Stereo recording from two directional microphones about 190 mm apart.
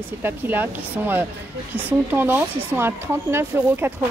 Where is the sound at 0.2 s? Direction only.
10° right (ahead or behind).